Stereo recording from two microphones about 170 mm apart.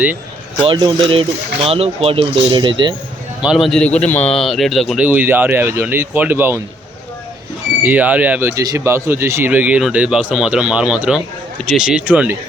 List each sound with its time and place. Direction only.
0.6 s speech: 30° right (ahead or behind)
3.4 s speech: centre (ahead or behind)
5.0 s speech: 10° right (ahead or behind)
7.8 s speech: 10° right (ahead or behind)